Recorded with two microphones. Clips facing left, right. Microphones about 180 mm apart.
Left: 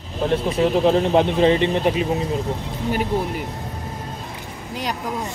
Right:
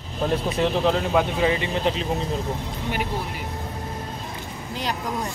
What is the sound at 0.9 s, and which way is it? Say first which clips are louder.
Speech: left 5 dB; 25° left (ahead or behind).